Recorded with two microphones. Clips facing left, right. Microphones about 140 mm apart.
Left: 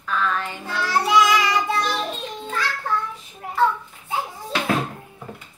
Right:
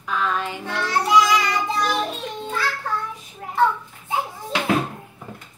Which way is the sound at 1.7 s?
10° right (ahead or behind).